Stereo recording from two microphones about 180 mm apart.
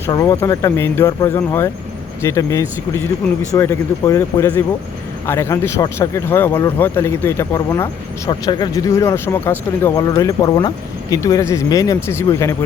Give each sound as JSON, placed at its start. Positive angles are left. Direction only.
{"t": 0.1, "sound": "speech", "side_deg": 20}